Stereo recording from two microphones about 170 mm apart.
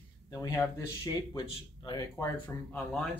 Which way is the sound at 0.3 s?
20° left (ahead or behind).